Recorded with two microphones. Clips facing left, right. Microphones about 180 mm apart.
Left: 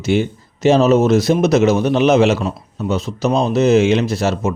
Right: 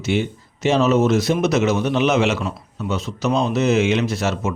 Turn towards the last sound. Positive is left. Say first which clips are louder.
# left 4 dB
turn(degrees=35)  # may be behind; listen again after turning